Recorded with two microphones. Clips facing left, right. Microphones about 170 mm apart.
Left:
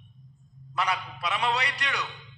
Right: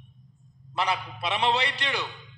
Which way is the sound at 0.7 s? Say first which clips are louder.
Right 1 dB; 30° right (ahead or behind).